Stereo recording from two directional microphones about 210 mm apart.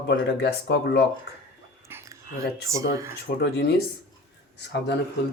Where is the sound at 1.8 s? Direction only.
10° right (ahead or behind).